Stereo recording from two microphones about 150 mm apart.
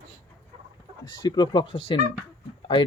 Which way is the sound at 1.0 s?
30° left (ahead or behind).